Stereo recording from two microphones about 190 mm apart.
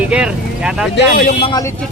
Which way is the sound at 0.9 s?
50° left (ahead or behind).